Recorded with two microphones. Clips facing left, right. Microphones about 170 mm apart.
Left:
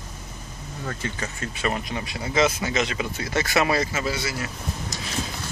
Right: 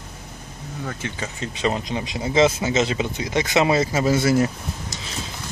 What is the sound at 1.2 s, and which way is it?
Speech, 20° right (ahead or behind).